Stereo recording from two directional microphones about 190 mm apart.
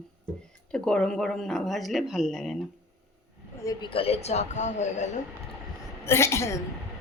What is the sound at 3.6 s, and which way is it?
Speech, 20° left (ahead or behind).